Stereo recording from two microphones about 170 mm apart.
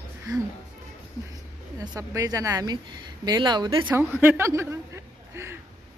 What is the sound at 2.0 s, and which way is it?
Speech, 20° right (ahead or behind).